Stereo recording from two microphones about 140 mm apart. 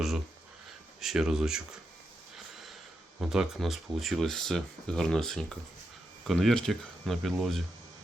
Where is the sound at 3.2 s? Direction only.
5° right (ahead or behind).